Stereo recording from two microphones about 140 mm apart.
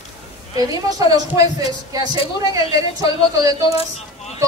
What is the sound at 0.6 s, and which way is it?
A woman's voice, 25° right (ahead or behind).